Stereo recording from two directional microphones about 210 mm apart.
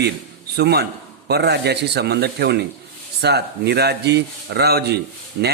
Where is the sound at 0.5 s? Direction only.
50° right (ahead or behind).